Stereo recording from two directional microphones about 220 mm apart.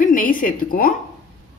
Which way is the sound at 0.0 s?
40° left (ahead or behind).